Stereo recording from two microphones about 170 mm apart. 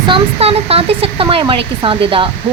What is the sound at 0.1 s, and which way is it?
A woman's voice, 35° right (ahead or behind).